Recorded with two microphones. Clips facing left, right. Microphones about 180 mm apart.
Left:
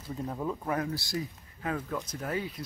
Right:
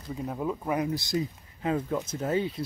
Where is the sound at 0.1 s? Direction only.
10° right (ahead or behind).